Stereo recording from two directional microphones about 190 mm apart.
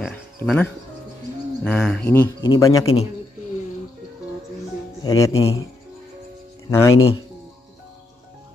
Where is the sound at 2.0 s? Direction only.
15° left (ahead or behind).